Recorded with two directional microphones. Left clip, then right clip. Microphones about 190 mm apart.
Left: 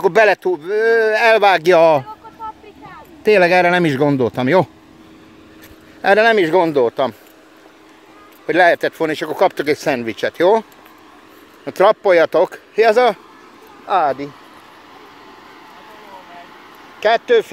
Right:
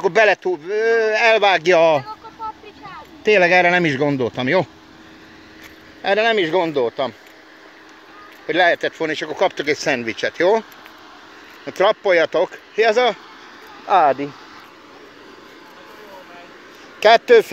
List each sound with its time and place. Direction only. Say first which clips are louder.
0.0 s speech: left 2 dB; 25° left (ahead or behind)
3.3 s speech: left 2 dB; 20° left (ahead or behind)
6.0 s speech: left 5 dB; 40° left (ahead or behind)
8.5 s speech: left 3 dB; 35° left (ahead or behind)
11.6 s speech: left 4 dB; 25° left (ahead or behind)
13.8 s speech: right 2 dB; 5° right (ahead or behind)
17.0 s speech: right 3 dB; 25° right (ahead or behind)